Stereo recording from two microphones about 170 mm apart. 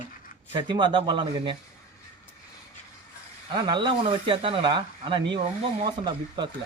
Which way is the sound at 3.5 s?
30° right (ahead or behind).